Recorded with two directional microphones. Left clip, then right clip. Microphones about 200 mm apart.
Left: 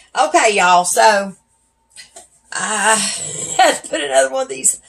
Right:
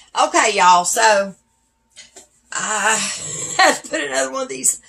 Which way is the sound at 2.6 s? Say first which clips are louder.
Left 3 dB; 20° right (ahead or behind).